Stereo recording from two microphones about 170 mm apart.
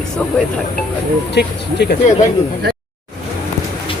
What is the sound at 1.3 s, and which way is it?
Speech, 80° left.